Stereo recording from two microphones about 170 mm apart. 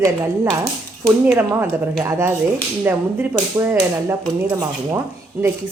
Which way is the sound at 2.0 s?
15° right (ahead or behind).